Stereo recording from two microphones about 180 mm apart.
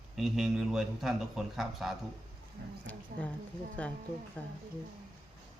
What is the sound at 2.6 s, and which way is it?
Speech, 65° right (ahead or behind).